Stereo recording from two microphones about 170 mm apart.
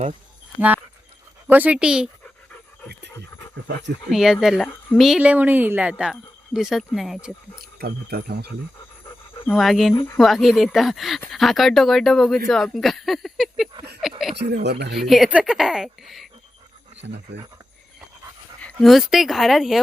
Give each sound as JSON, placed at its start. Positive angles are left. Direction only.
{"t": 1.5, "sound": "speech", "side_deg": -10}
{"t": 4.1, "sound": "speech", "side_deg": 0}
{"t": 7.8, "sound": "speech", "side_deg": -65}
{"t": 9.5, "sound": "speech", "side_deg": 0}
{"t": 14.3, "sound": "speech", "side_deg": -75}
{"t": 14.9, "sound": "speech", "side_deg": 0}
{"t": 17.0, "sound": "speech", "side_deg": -90}
{"t": 18.6, "sound": "speech", "side_deg": 0}